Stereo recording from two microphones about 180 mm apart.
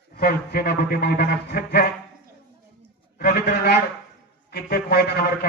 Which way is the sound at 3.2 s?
60° left (ahead or behind).